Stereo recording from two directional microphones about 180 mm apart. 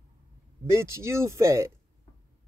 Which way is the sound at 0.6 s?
15° right (ahead or behind).